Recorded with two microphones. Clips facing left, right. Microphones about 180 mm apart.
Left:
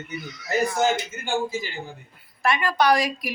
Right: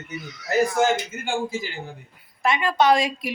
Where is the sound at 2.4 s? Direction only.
20° right (ahead or behind).